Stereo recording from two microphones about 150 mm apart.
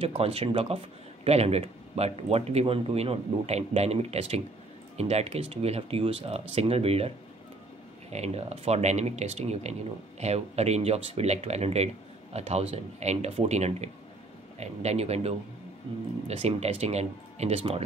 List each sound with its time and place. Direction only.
0.0 s speech: 40° right (ahead or behind)